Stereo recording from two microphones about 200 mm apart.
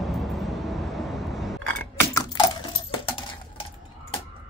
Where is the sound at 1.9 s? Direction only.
20° left (ahead or behind).